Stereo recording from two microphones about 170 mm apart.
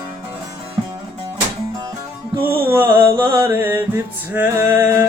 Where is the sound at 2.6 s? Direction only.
15° right (ahead or behind).